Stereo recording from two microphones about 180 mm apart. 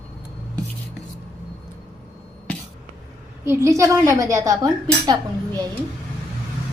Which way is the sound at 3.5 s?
15° right (ahead or behind).